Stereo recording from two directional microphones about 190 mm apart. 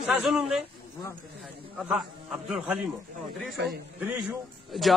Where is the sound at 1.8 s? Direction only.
Centre (ahead or behind).